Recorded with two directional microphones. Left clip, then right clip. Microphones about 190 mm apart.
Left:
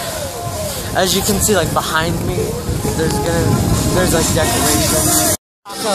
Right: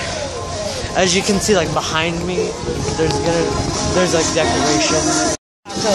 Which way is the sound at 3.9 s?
15° left (ahead or behind).